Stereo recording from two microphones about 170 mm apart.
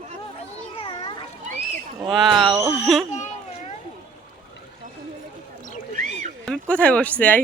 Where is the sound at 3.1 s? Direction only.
45° left (ahead or behind).